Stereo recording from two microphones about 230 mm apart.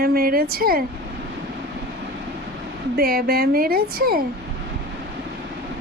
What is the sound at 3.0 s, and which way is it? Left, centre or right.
A woman's voice, right.